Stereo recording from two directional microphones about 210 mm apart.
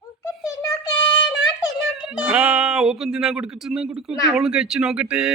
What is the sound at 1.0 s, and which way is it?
Child singing, 20° left (ahead or behind).